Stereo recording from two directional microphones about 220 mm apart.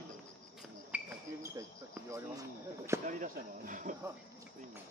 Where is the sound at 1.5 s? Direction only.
10° right (ahead or behind).